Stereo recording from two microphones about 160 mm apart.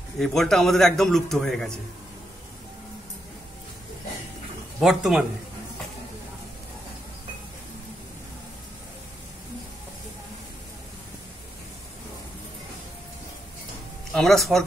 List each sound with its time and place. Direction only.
0.2 s a man's voice: centre (ahead or behind)
4.7 s a man's voice: centre (ahead or behind)
14.1 s a man's voice: centre (ahead or behind)